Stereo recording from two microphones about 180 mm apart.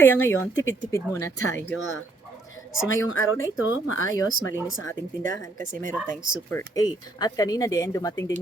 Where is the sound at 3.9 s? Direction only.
90° left.